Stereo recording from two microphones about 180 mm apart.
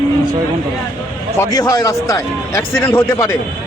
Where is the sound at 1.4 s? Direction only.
20° left (ahead or behind).